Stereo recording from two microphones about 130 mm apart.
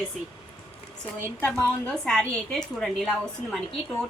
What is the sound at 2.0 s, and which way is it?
A woman's voice, 5° left (ahead or behind).